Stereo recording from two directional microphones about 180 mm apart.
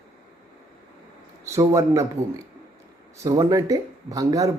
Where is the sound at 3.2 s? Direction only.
20° right (ahead or behind).